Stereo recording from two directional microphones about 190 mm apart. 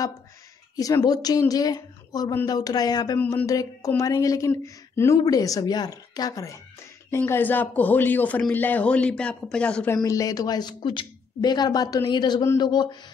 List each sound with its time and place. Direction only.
0.7 s speech: 20° left (ahead or behind)
10.0 s speech: 20° left (ahead or behind)